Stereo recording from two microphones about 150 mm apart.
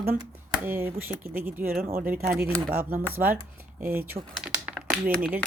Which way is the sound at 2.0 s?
65° right (ahead or behind).